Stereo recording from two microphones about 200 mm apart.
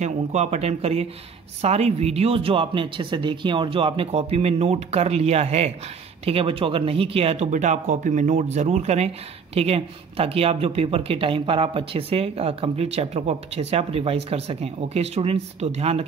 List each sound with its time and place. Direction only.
0.0 s speech: 35° right (ahead or behind)